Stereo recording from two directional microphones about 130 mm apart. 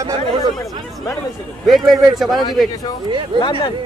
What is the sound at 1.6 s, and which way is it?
Speech, centre (ahead or behind).